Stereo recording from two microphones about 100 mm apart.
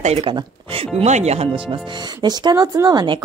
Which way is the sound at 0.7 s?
85° right.